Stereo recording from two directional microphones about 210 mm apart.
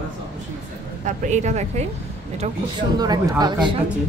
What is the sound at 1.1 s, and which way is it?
Speech, 35° right (ahead or behind).